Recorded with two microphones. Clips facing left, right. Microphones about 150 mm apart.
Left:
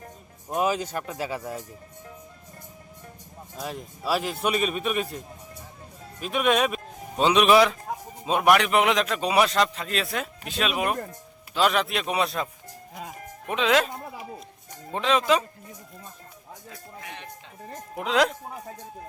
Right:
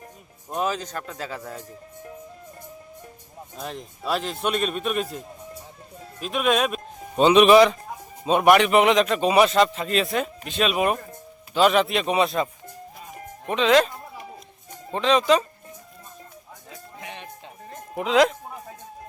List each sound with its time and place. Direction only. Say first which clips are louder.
0.5 s speech: left 2 dB; 10° left (ahead or behind)
3.6 s a man's voice: even; 5° left (ahead or behind)
13.5 s a man's voice: right 4 dB; 5° left (ahead or behind)
14.9 s speech: right 3 dB; 5° left (ahead or behind)
17.0 s a sound: right 3 dB; 20° right (ahead or behind)
17.9 s a man's voice: right 4 dB; centre (ahead or behind)